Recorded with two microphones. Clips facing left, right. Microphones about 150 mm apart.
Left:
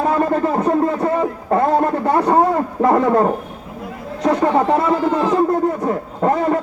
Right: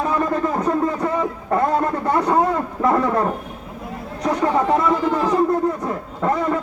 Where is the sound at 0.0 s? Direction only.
35° left (ahead or behind).